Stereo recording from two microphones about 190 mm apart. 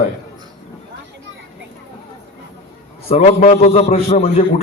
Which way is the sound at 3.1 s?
35° left (ahead or behind).